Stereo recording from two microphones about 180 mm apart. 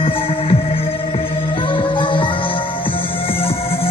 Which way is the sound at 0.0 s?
30° left (ahead or behind).